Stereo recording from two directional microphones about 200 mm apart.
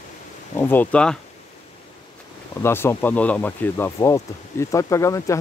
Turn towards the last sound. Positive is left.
turn(degrees=15)  # may be behind; listen again after turning